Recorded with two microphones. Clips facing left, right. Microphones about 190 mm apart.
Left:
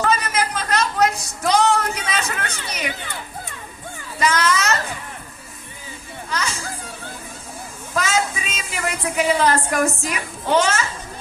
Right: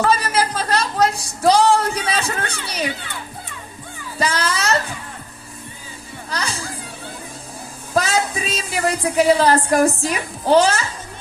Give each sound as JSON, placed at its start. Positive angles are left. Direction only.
{"t": 0.0, "sound": "a sound", "side_deg": -35}
{"t": 4.2, "sound": "children playing", "side_deg": -30}
{"t": 6.3, "sound": "children playing", "side_deg": -35}
{"t": 7.9, "sound": "a woman's voice", "side_deg": -35}